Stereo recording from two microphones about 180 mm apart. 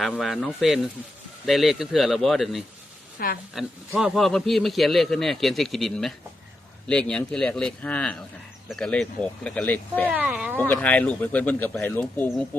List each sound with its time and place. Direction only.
0.0 s a man's voice: centre (ahead or behind)
3.2 s a woman's voice: 55° left (ahead or behind)
3.5 s a man's voice: centre (ahead or behind)
10.1 s speech: 10° right (ahead or behind)
10.6 s speech: 10° left (ahead or behind)